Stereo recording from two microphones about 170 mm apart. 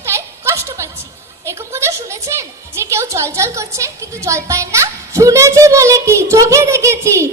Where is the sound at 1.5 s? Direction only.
15° right (ahead or behind).